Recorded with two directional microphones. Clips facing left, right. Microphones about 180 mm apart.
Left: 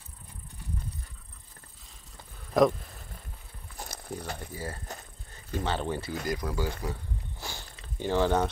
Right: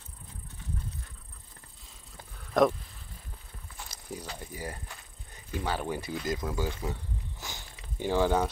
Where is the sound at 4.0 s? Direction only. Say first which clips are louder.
Left 2 dB; 60° left (ahead or behind).